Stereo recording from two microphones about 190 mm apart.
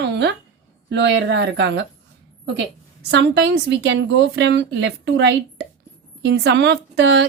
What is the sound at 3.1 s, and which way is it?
A woman's voice, 65° right (ahead or behind).